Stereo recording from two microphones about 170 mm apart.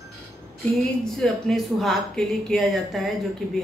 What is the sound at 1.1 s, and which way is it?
Speech, centre (ahead or behind).